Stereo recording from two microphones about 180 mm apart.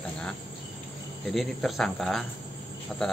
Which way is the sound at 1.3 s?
Centre (ahead or behind).